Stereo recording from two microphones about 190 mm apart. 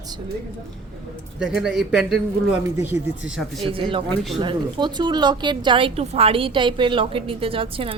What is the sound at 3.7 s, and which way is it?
A woman's voice, 30° right (ahead or behind).